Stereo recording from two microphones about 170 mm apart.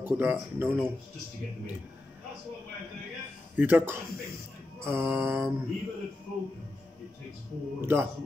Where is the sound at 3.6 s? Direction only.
10° right (ahead or behind).